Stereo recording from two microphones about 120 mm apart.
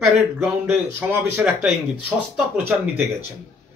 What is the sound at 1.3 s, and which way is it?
A man's voice, 10° right (ahead or behind).